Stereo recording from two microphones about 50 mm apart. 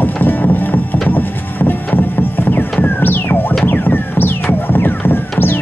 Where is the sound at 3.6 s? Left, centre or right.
Left.